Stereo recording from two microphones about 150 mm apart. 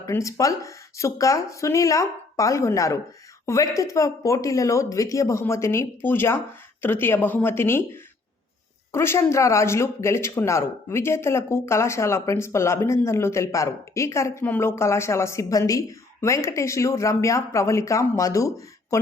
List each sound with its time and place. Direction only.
0.0 s speech: 20° left (ahead or behind)
8.9 s speech: 15° left (ahead or behind)